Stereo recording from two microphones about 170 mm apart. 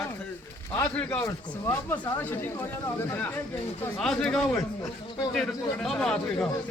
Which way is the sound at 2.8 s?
10° left (ahead or behind).